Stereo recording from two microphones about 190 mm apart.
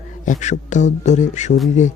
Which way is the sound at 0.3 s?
40° left (ahead or behind).